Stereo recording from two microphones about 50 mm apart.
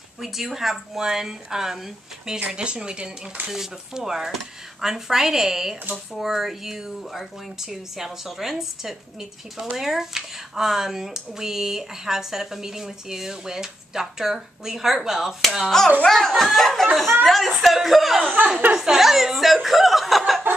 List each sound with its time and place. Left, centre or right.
0.2 s speech: centre
15.7 s speech: centre